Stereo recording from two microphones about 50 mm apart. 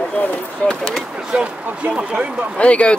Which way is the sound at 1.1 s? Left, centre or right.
Right.